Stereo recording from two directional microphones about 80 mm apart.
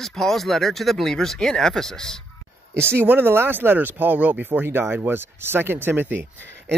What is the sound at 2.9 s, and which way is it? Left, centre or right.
Speech, right.